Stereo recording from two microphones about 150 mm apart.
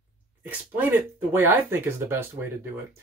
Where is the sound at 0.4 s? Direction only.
10° right (ahead or behind).